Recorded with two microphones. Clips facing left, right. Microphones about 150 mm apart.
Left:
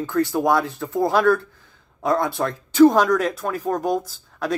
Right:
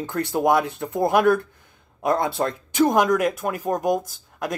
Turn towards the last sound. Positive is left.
turn(degrees=-15)  # may be behind; listen again after turning